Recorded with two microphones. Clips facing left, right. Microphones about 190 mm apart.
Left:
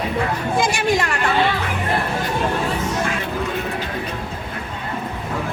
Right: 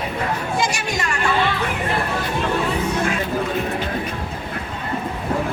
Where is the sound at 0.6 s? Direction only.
55° left (ahead or behind).